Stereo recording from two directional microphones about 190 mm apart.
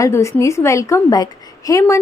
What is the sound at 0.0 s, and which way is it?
A woman's voice, 15° left (ahead or behind).